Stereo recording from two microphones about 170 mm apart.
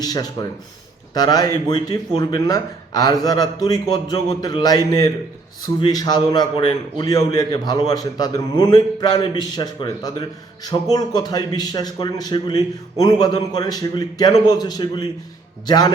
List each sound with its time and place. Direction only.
0.0 s a man's voice: 20° left (ahead or behind)